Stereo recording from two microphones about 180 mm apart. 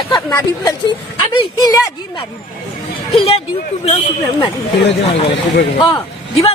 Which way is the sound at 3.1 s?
30° left (ahead or behind).